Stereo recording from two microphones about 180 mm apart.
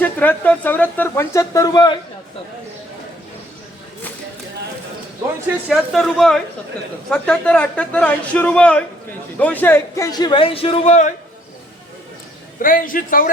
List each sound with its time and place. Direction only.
0.0 s speech: 10° left (ahead or behind)
5.6 s a woman's voice: centre (ahead or behind); by 11.1 s 40° left (ahead or behind)
12.6 s a man's voice: 50° left (ahead or behind)